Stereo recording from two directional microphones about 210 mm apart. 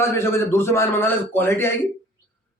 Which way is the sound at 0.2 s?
10° left (ahead or behind).